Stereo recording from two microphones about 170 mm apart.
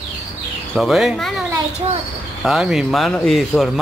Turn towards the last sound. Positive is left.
turn(degrees=0)  # may be behind; listen again after turning